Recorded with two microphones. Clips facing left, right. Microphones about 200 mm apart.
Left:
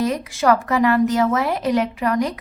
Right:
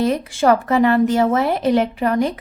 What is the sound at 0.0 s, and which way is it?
Speech, 30° right (ahead or behind).